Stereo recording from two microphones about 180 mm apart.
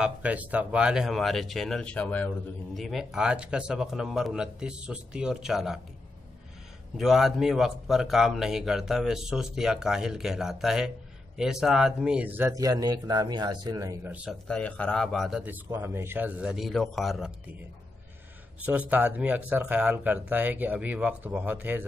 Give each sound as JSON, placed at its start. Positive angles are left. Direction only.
{"t": 0.0, "sound": "speech", "side_deg": -10}
{"t": 7.0, "sound": "speech", "side_deg": 0}
{"t": 14.5, "sound": "speech", "side_deg": 5}
{"t": 18.7, "sound": "speech", "side_deg": -10}